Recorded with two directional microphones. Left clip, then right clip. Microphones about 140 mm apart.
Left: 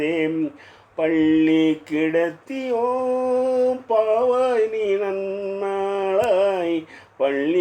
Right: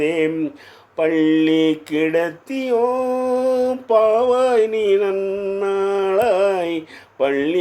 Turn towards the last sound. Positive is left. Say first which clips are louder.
# right 2 dB
turn(degrees=-40)  # may be behind; listen again after turning